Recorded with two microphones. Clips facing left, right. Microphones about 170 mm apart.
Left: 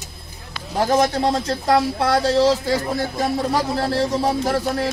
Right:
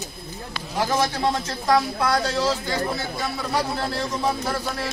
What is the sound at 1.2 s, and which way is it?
Speech, 30° left (ahead or behind).